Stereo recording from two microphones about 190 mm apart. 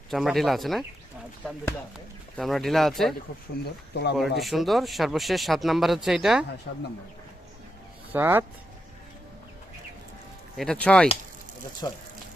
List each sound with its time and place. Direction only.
0.1 s speech: centre (ahead or behind)
2.3 s speech: centre (ahead or behind)
3.6 s speech: 60° left (ahead or behind)
4.4 s speech: centre (ahead or behind)
6.7 s speech: 60° left (ahead or behind)
8.1 s speech: 10° right (ahead or behind)
10.6 s speech: 5° left (ahead or behind)
11.8 s speech: 20° left (ahead or behind)